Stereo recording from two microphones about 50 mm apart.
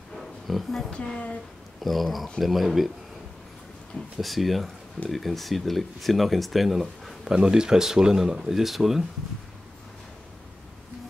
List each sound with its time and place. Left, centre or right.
0.2 s a sound: centre
0.8 s speech: centre
1.8 s speech: centre
4.2 s speech: centre